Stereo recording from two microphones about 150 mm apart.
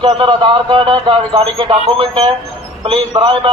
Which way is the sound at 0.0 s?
35° right (ahead or behind).